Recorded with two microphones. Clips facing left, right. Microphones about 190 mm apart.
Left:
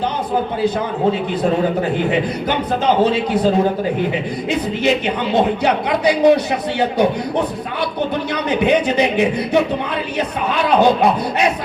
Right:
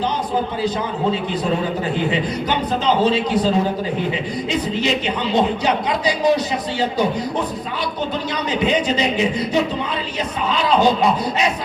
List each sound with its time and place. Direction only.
2.0 s speech: 55° left (ahead or behind)
8.4 s speech: 60° left (ahead or behind)